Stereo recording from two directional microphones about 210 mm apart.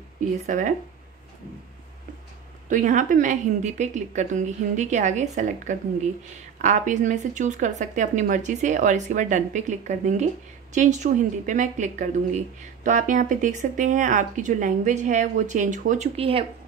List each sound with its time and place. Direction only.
0.5 s a woman's voice: 35° right (ahead or behind)
2.7 s a woman's voice: 35° right (ahead or behind)